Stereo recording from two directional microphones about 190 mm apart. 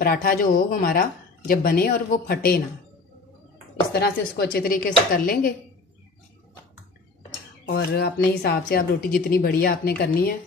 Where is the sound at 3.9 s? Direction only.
55° left (ahead or behind).